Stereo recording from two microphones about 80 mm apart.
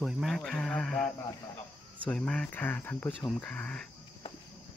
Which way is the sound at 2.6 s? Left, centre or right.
Left.